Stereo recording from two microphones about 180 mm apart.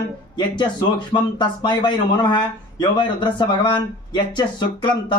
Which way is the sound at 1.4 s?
25° left (ahead or behind).